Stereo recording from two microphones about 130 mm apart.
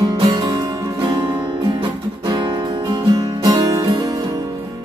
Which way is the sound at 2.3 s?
35° right (ahead or behind).